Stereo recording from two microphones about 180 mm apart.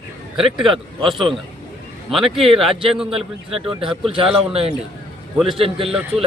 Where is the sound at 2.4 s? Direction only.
30° right (ahead or behind).